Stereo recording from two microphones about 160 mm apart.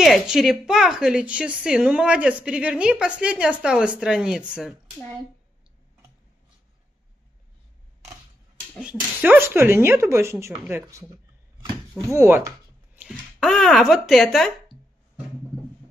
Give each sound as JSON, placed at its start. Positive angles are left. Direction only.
{"t": 0.0, "sound": "a woman's voice", "side_deg": 0}
{"t": 8.7, "sound": "speech", "side_deg": -5}
{"t": 12.1, "sound": "a sound", "side_deg": -15}
{"t": 13.4, "sound": "a woman's voice", "side_deg": 0}